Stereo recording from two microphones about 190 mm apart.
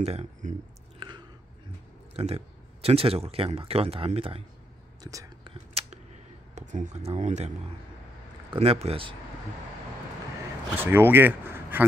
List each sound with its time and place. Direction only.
0.0 s speech: 35° right (ahead or behind)
0.9 s chewing: 25° right (ahead or behind)
2.1 s speech: 30° right (ahead or behind)
5.0 s whispering: 25° right (ahead or behind)
6.5 s speech: 40° right (ahead or behind)
10.8 s speech: 10° right (ahead or behind)